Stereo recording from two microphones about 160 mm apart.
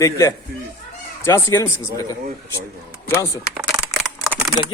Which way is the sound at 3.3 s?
15° right (ahead or behind).